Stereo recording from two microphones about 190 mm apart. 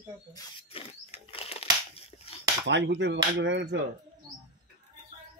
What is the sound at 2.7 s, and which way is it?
Speech, 70° right (ahead or behind).